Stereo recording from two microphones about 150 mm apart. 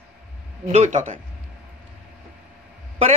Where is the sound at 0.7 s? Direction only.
45° right (ahead or behind).